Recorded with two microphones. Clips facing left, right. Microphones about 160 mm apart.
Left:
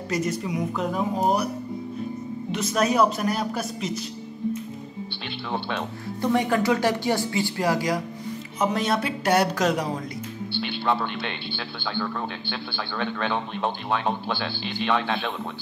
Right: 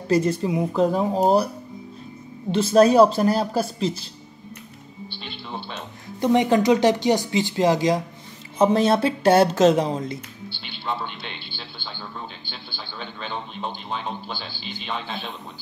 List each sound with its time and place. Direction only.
0.1 s speech: 30° right (ahead or behind)
2.5 s a woman's voice: 30° right (ahead or behind)
5.5 s speech: 60° left (ahead or behind)
6.2 s speech: 20° right (ahead or behind)
10.6 s speech: 60° left (ahead or behind)